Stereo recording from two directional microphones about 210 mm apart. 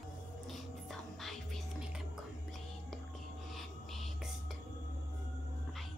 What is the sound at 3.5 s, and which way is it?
Music, centre (ahead or behind).